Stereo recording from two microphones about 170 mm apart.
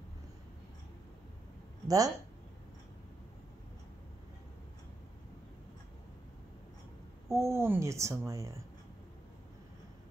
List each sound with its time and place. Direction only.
1.9 s speech: 20° right (ahead or behind)
7.2 s a woman's voice: 15° right (ahead or behind)